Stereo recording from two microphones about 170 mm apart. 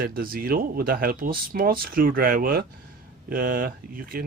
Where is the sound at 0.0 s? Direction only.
60° right (ahead or behind).